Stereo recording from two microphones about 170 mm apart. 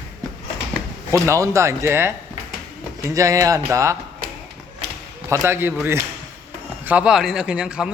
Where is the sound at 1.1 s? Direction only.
15° right (ahead or behind).